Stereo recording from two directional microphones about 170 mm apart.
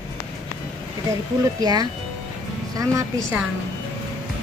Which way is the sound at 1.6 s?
25° right (ahead or behind).